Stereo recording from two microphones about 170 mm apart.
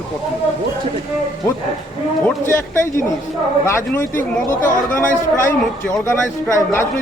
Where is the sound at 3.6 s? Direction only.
15° left (ahead or behind).